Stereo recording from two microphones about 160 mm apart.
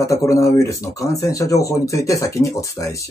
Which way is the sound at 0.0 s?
20° left (ahead or behind).